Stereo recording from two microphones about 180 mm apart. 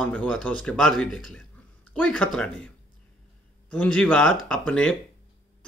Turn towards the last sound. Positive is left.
turn(degrees=5)  # may be behind; listen again after turning